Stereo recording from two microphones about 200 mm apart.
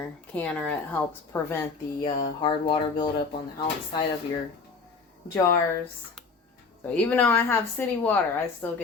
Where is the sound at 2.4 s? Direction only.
25° left (ahead or behind).